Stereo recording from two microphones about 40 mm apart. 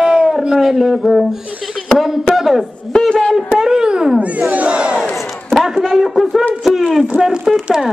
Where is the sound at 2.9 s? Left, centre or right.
Left.